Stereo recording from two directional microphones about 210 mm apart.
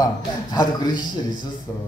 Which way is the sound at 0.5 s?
20° left (ahead or behind).